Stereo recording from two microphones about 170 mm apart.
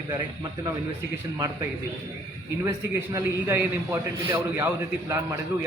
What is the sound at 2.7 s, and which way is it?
A man's voice, 15° right (ahead or behind).